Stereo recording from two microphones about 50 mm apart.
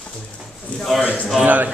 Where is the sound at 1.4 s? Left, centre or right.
Right.